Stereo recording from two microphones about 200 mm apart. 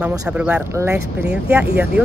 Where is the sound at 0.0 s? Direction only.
10° right (ahead or behind).